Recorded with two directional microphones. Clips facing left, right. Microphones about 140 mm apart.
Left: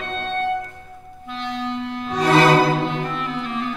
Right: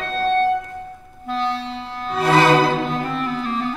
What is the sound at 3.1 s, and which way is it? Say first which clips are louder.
Music: right 3 dB; 40° right (ahead or behind).